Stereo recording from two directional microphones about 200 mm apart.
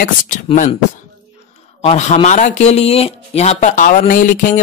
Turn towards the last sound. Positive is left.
turn(degrees=40)  # may be behind; listen again after turning